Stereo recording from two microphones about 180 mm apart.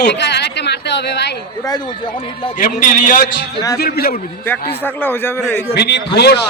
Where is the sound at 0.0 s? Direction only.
70° left (ahead or behind).